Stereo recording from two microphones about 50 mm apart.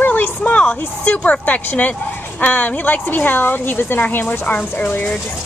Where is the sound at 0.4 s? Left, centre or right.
Left.